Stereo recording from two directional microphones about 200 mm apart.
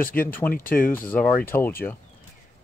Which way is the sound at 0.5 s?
45° left (ahead or behind).